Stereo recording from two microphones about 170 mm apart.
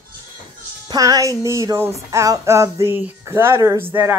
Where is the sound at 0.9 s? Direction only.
20° right (ahead or behind).